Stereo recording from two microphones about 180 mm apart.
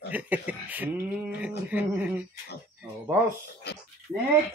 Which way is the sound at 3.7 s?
65° left (ahead or behind).